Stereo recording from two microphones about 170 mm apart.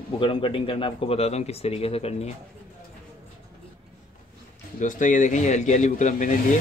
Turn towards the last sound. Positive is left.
turn(degrees=50)  # may be behind; listen again after turning